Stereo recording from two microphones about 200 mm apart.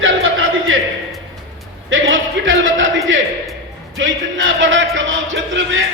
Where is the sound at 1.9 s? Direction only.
75° right (ahead or behind).